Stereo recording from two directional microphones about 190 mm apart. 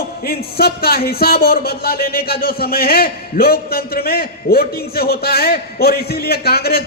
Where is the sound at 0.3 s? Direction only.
55° left (ahead or behind).